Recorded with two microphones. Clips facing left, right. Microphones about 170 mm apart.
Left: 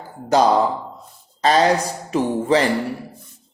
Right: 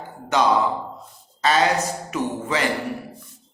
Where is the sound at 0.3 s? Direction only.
35° left (ahead or behind).